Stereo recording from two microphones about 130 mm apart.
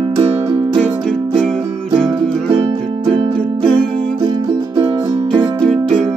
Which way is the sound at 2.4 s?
40° right (ahead or behind).